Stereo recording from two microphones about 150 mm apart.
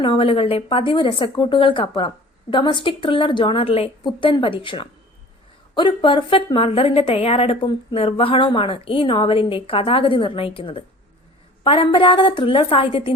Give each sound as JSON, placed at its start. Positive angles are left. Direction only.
{"t": 0.0, "sound": "a woman's voice", "side_deg": 35}